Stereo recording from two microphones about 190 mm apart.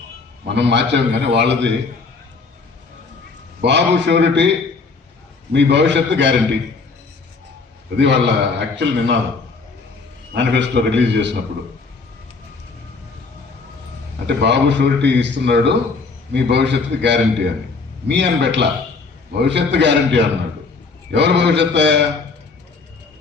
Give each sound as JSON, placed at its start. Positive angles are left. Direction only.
{"t": 0.4, "sound": "a man's voice", "side_deg": -65}
{"t": 3.6, "sound": "a man's voice", "side_deg": -65}
{"t": 7.9, "sound": "a man's voice", "side_deg": -65}
{"t": 10.3, "sound": "a man's voice", "side_deg": -65}
{"t": 14.3, "sound": "a man's voice", "side_deg": -65}